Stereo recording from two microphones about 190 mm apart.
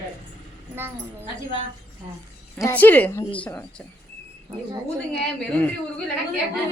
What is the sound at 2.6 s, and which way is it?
Speech, 10° left (ahead or behind).